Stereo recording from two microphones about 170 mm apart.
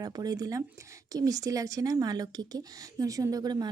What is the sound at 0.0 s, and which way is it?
Speech, 25° right (ahead or behind).